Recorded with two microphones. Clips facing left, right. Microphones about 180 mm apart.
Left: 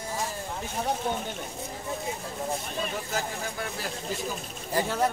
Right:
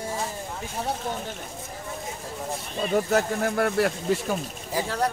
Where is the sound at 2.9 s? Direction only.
60° right (ahead or behind).